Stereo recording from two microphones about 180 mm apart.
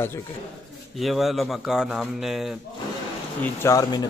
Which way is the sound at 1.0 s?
Centre (ahead or behind).